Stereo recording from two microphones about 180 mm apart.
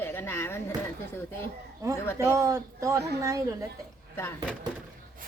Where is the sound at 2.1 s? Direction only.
15° right (ahead or behind).